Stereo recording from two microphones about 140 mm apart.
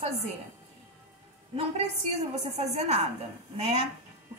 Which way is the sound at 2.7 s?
50° right (ahead or behind).